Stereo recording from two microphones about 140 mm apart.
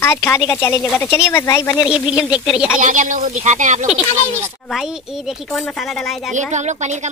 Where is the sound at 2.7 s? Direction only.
65° right (ahead or behind).